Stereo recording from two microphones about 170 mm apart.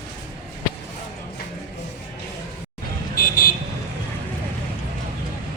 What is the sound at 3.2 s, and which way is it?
Vehicle, 55° left (ahead or behind).